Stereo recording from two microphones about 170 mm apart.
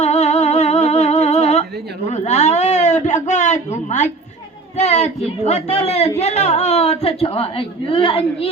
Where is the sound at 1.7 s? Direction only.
75° right (ahead or behind).